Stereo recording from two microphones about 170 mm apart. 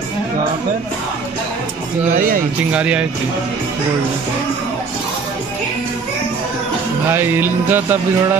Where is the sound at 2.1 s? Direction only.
55° right (ahead or behind).